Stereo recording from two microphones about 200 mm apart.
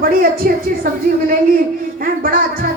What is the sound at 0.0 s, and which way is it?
Speech, 45° right (ahead or behind).